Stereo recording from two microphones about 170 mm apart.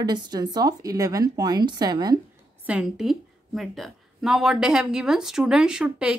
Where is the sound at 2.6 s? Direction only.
5° right (ahead or behind).